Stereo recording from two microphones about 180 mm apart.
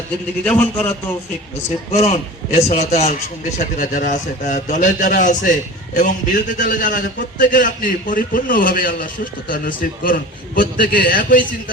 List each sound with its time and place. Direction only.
0.4 s a man's voice: 10° left (ahead or behind)
1.9 s a man's voice: 40° left (ahead or behind)